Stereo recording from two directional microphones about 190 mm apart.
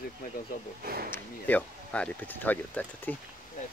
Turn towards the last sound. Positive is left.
turn(degrees=10)  # may be behind; listen again after turning